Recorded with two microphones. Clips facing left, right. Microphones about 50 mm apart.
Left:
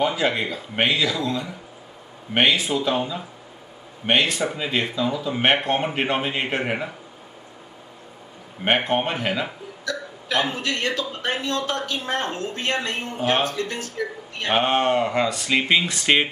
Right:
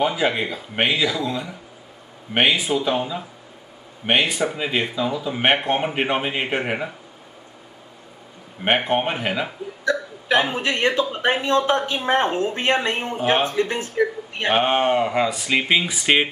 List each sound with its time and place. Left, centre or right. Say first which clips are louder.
0.0 s speech: right 1 dB; centre
8.6 s speech: right 1 dB; centre
9.8 s speech: right 7 dB; right
14.5 s speech: right 1 dB; centre